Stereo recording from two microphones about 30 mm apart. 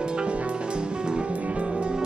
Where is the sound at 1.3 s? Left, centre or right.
Right.